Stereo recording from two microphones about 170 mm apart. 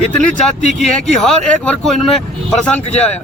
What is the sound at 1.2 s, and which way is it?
Speech, centre (ahead or behind).